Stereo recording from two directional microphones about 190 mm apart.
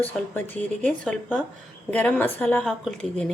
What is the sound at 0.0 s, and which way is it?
A woman's voice, 10° left (ahead or behind).